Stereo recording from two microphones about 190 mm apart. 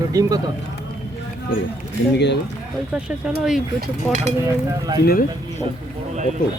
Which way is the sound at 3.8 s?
40° right (ahead or behind).